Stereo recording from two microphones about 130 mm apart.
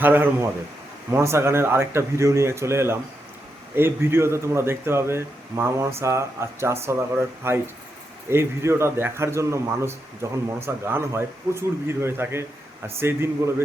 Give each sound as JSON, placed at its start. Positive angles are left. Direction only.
{"t": 0.0, "sound": "speech", "side_deg": -15}